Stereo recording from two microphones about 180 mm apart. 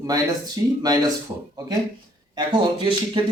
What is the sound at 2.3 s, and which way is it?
Speech, 25° right (ahead or behind).